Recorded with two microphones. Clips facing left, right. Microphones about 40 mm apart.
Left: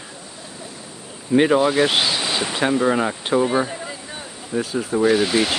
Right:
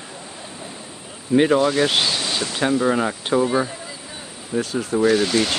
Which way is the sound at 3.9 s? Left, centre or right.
Centre.